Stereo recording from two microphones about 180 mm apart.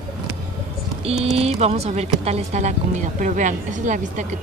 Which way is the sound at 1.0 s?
35° right (ahead or behind).